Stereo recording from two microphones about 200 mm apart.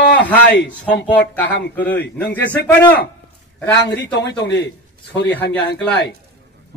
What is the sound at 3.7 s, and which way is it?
A man's voice, 60° left (ahead or behind).